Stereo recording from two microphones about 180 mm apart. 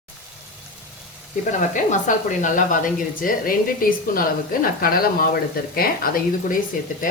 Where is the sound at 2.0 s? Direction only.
45° left (ahead or behind).